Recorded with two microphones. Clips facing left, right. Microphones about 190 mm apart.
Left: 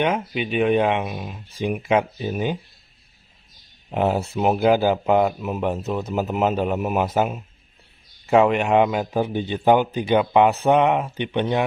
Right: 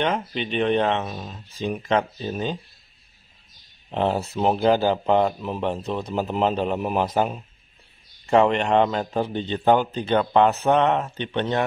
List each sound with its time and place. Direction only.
0.0 s a man's voice: 10° left (ahead or behind)
3.9 s a man's voice: 5° left (ahead or behind)